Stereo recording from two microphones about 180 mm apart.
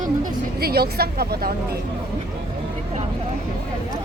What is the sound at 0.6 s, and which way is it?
Speech, 60° right (ahead or behind).